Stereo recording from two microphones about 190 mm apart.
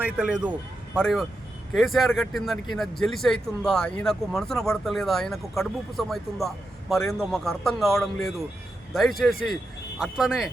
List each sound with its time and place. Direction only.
0.0 s speech: 10° right (ahead or behind)